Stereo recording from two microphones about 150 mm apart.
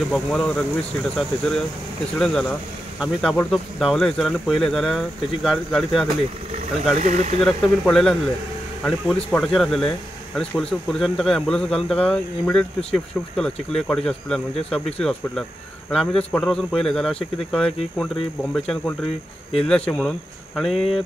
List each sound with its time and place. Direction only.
0.1 s speech: 5° left (ahead or behind)
7.0 s speech: 50° right (ahead or behind)
7.4 s speech: 5° left (ahead or behind)